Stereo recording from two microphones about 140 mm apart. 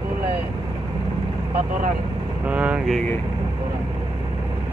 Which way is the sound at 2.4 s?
10° right (ahead or behind).